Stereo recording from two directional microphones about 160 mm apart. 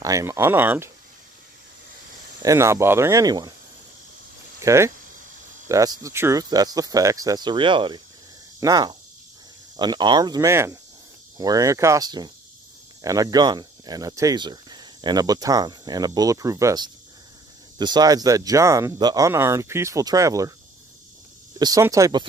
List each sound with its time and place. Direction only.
0.0 s speech: 20° right (ahead or behind)
2.4 s speech: 20° right (ahead or behind)
4.6 s speech: 20° right (ahead or behind)
21.5 s speech: 25° right (ahead or behind)